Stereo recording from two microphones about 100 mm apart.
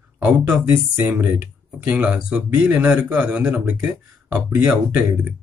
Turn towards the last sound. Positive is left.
turn(degrees=-15)  # may be behind; listen again after turning